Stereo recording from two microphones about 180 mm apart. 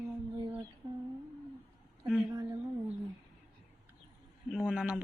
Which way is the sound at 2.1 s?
5° right (ahead or behind).